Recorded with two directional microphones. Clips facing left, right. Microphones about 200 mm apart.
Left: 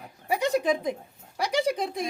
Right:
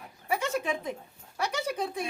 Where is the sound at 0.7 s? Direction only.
15° left (ahead or behind).